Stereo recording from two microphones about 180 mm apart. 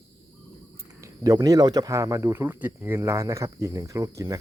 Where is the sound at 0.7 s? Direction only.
20° right (ahead or behind).